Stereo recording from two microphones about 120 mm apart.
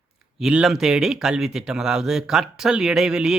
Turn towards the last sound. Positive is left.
turn(degrees=-5)  # may be behind; listen again after turning